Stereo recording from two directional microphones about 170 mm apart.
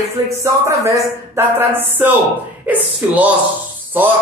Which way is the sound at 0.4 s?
15° right (ahead or behind).